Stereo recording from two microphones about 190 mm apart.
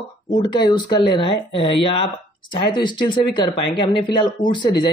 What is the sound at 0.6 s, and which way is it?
Speech, 25° left (ahead or behind).